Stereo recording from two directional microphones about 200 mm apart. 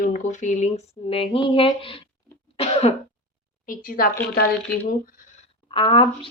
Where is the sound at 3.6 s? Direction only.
45° left (ahead or behind).